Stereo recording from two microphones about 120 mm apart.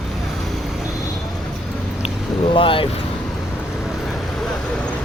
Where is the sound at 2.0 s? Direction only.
45° left (ahead or behind).